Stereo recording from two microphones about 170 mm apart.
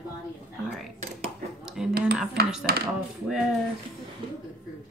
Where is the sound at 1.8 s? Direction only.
Centre (ahead or behind).